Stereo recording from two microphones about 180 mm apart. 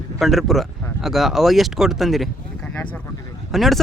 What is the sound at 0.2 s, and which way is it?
Speech, centre (ahead or behind).